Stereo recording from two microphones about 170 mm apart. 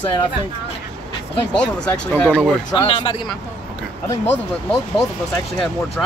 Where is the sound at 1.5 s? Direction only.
5° left (ahead or behind).